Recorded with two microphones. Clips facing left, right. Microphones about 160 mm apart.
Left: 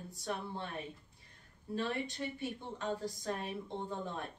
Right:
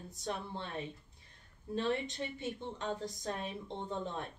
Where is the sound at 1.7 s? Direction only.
20° right (ahead or behind).